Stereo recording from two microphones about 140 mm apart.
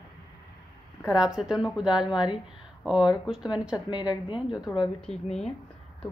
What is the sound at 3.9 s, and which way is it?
Speech, 30° left (ahead or behind).